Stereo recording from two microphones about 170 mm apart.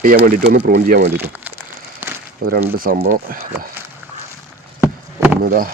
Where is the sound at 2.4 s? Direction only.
55° right (ahead or behind).